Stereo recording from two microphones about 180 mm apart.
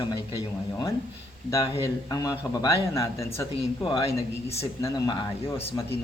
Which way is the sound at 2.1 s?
20° left (ahead or behind).